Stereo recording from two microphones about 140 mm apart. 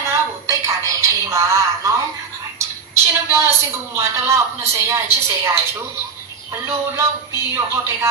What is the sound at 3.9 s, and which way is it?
A woman's voice, 20° right (ahead or behind).